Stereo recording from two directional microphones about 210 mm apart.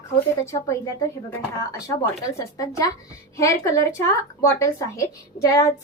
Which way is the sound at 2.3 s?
15° left (ahead or behind).